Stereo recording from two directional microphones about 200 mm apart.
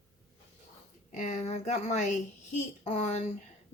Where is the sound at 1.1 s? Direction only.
40° left (ahead or behind).